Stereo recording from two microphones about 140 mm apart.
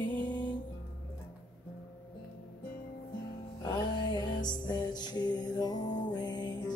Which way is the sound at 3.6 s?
30° left (ahead or behind).